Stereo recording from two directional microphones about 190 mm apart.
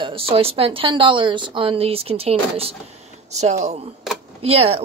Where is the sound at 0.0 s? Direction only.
30° right (ahead or behind).